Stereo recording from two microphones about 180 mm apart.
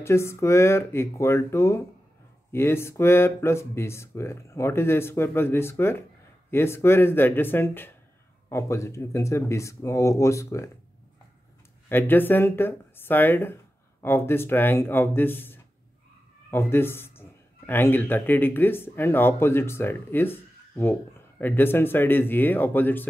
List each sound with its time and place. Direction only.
0.0 s speech: 15° left (ahead or behind)
11.9 s speech: 10° left (ahead or behind)